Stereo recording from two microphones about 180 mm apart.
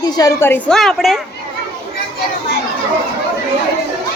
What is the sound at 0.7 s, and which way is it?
Speech, centre (ahead or behind).